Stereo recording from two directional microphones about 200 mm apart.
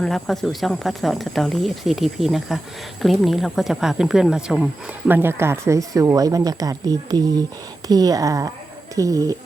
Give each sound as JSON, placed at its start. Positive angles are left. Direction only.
{"t": 0.0, "sound": "speech", "side_deg": 0}